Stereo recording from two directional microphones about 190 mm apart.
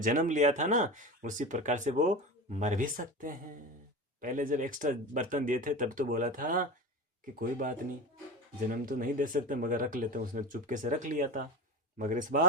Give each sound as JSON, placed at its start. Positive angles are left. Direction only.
{"t": 0.0, "sound": "speech", "side_deg": -45}